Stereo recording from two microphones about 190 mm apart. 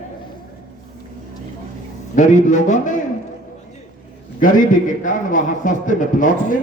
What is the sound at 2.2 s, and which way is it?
Speech, 40° left (ahead or behind).